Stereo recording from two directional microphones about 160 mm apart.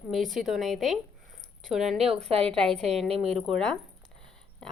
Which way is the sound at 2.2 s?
40° right (ahead or behind).